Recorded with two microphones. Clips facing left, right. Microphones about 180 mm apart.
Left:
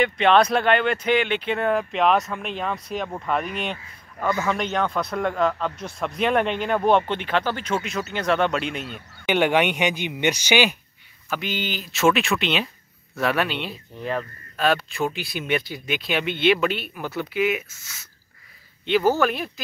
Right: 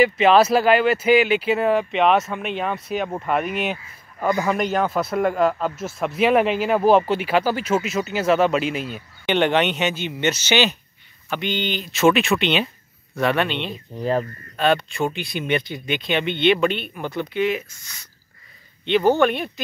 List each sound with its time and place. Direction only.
0.0 s a man's voice: 5° right (ahead or behind)
9.3 s speech: 10° left (ahead or behind)
13.9 s speech: 35° right (ahead or behind)
14.6 s speech: centre (ahead or behind)